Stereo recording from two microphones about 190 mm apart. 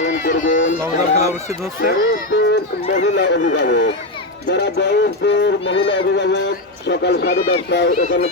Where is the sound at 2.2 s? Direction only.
65° left (ahead or behind).